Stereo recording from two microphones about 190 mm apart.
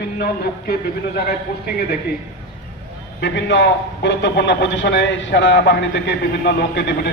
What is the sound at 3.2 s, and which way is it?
A man's voice, 65° left (ahead or behind).